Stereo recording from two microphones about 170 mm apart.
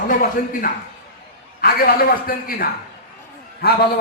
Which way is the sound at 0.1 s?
55° left (ahead or behind).